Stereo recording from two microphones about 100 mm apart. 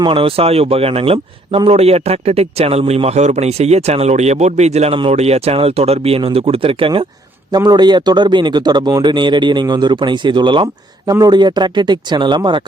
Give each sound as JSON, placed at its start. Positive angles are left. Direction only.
{"t": 0.1, "sound": "speech", "side_deg": -65}
{"t": 4.9, "sound": "speech", "side_deg": -75}
{"t": 7.5, "sound": "a man's voice", "side_deg": -45}